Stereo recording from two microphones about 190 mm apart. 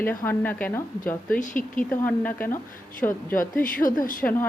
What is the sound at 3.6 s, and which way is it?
Speech, 45° left (ahead or behind).